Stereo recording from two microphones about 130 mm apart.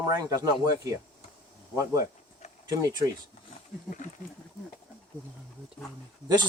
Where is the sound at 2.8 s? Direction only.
30° right (ahead or behind).